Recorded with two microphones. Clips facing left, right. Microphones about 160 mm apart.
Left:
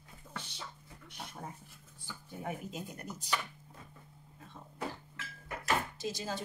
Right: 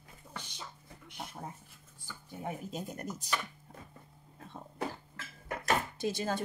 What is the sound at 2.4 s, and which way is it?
Speech, 40° right (ahead or behind).